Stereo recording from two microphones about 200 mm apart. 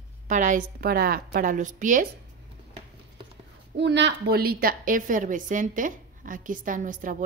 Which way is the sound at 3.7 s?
60° right (ahead or behind).